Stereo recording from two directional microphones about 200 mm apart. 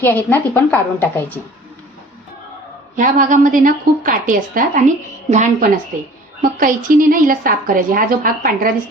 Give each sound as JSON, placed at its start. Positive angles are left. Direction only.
{"t": 0.0, "sound": "a woman's voice", "side_deg": 10}
{"t": 2.9, "sound": "a woman's voice", "side_deg": -40}